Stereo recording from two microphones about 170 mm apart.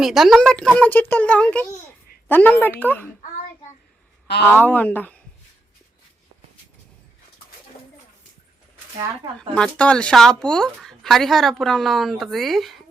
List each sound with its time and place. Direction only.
0.0 s speech: centre (ahead or behind)
4.4 s speech: 10° left (ahead or behind)
9.0 s speech: 25° right (ahead or behind)
9.6 s speech: 5° left (ahead or behind)